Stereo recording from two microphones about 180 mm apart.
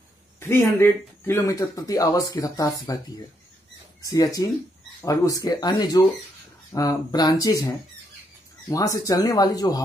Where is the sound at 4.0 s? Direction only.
20° left (ahead or behind).